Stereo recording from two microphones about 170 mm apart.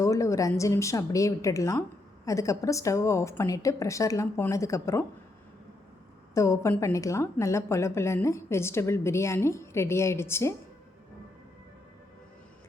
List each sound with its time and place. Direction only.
0.0 s a woman's voice: 20° left (ahead or behind)
6.3 s a woman's voice: 15° left (ahead or behind)